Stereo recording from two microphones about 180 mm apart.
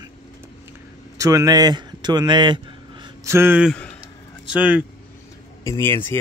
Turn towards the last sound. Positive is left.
turn(degrees=15)  # may be behind; listen again after turning